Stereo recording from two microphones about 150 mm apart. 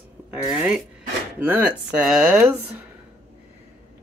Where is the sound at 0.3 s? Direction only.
10° right (ahead or behind).